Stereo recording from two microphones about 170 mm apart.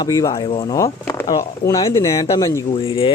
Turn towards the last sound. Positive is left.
turn(degrees=30)  # may be behind; listen again after turning